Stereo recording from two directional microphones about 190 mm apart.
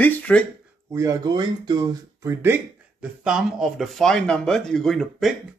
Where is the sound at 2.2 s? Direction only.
10° right (ahead or behind).